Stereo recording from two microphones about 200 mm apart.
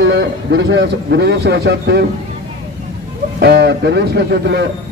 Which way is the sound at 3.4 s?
55° right (ahead or behind).